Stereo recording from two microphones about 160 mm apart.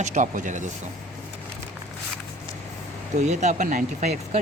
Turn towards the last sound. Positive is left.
turn(degrees=-55)  # may be behind; listen again after turning